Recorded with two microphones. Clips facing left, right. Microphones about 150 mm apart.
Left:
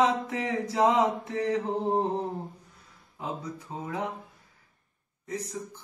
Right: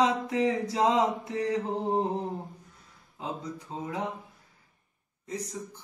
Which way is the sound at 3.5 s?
10° left (ahead or behind).